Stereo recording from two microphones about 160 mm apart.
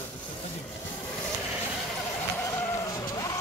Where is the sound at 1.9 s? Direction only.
10° left (ahead or behind).